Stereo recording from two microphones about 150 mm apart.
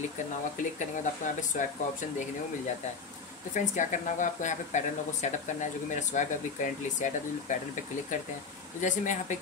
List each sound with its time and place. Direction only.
0.7 s speech: 55° left (ahead or behind)